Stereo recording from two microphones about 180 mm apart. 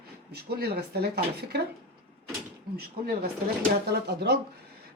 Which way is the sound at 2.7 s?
55° right (ahead or behind).